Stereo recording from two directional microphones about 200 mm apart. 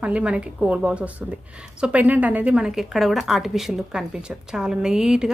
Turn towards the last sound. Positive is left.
turn(degrees=-5)  # may be behind; listen again after turning